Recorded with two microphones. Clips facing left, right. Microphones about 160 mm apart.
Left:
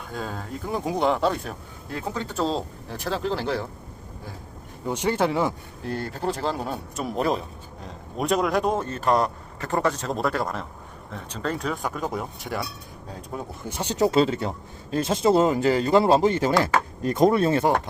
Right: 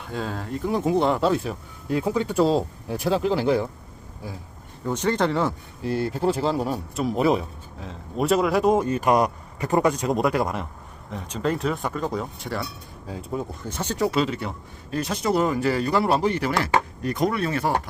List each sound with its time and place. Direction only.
0.1 s speech: centre (ahead or behind)
4.9 s speech: 10° left (ahead or behind)
5.8 s speech: 5° right (ahead or behind)
13.7 s speech: 15° left (ahead or behind); by 17.7 s 30° left (ahead or behind)